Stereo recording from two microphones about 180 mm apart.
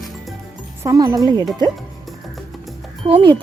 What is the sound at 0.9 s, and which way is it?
Speech, 20° right (ahead or behind).